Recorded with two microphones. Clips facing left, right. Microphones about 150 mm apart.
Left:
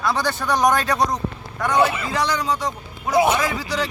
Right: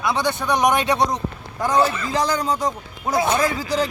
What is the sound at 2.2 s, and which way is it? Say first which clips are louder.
Speech: right 1 dB; 40° right (ahead or behind).